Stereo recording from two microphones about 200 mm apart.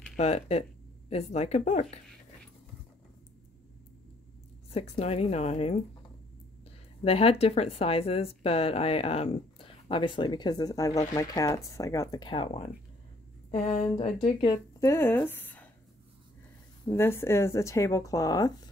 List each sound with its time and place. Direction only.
0.1 s speech: 30° left (ahead or behind)
4.6 s speech: 30° left (ahead or behind)
7.1 s speech: 30° left (ahead or behind)
14.2 s speech: 25° left (ahead or behind)
16.9 s speech: 10° left (ahead or behind)